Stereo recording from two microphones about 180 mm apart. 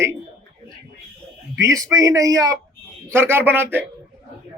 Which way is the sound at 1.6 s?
20° right (ahead or behind).